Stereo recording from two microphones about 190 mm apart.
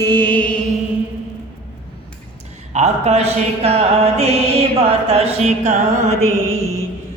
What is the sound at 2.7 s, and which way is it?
Speech, 35° right (ahead or behind).